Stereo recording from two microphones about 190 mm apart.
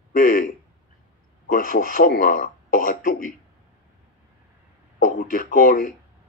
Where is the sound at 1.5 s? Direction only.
45° left (ahead or behind).